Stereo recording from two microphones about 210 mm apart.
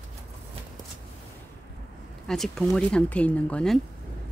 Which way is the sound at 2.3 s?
Centre (ahead or behind).